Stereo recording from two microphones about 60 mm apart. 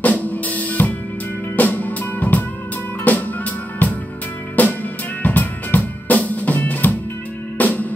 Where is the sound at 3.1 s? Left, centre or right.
Left.